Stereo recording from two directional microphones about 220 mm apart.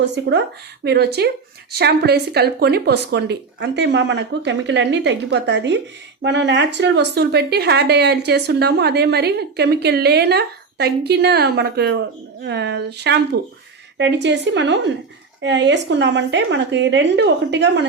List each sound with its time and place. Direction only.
0.0 s speech: 55° right (ahead or behind)